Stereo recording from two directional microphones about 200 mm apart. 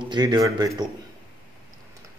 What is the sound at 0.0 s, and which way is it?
Speech, 20° right (ahead or behind).